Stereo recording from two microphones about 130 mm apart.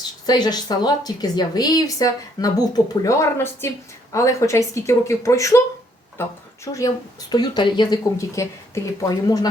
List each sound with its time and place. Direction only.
0.3 s a woman's voice: 30° left (ahead or behind)
6.7 s a woman's voice: 30° left (ahead or behind)